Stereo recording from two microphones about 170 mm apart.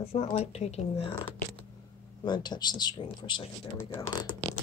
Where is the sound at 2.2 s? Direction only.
25° left (ahead or behind).